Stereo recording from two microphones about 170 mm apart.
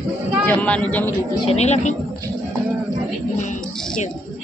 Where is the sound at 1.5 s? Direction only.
40° left (ahead or behind).